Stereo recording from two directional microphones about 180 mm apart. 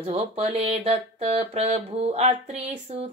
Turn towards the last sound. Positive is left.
turn(degrees=-35)  # may be behind; listen again after turning